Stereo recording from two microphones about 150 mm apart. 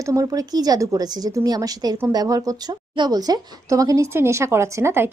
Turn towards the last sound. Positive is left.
turn(degrees=-15)  # may be behind; listen again after turning